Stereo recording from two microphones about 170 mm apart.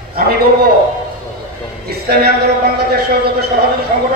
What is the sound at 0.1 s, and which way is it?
Speech, 65° right (ahead or behind).